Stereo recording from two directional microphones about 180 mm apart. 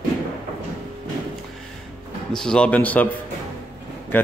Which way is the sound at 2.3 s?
5° left (ahead or behind).